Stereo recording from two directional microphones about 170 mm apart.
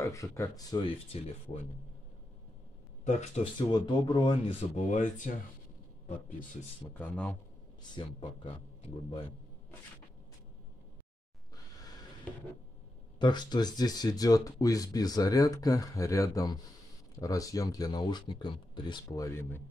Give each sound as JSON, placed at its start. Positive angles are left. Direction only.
{"t": 0.0, "sound": "speech", "side_deg": 20}
{"t": 1.1, "sound": "speech", "side_deg": 35}
{"t": 3.1, "sound": "a man's voice", "side_deg": 45}
{"t": 3.5, "sound": "a man's voice", "side_deg": 25}
{"t": 6.9, "sound": "speech", "side_deg": 10}
{"t": 8.0, "sound": "speech", "side_deg": 30}
{"t": 12.3, "sound": "a sound", "side_deg": 5}
{"t": 13.2, "sound": "speech", "side_deg": 25}